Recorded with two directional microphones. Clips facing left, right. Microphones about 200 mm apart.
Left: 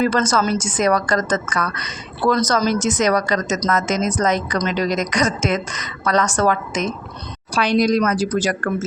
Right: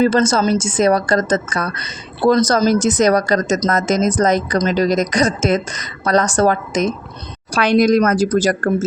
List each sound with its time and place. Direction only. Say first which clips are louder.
0.0 s a woman's voice: right 4 dB; 25° right (ahead or behind)
7.5 s a woman's voice: right 4 dB; 55° right (ahead or behind)